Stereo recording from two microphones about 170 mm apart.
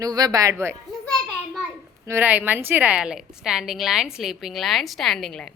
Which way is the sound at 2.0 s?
10° right (ahead or behind).